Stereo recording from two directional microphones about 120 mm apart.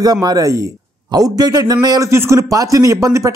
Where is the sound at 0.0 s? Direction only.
35° right (ahead or behind).